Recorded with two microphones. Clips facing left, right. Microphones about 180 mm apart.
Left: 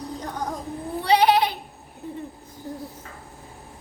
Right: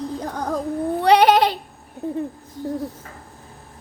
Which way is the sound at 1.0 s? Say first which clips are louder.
Right 4 dB; 70° right (ahead or behind).